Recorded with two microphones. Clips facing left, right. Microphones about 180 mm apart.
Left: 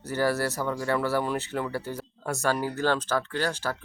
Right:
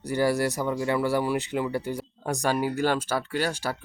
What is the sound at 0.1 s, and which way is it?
Speech, 15° right (ahead or behind).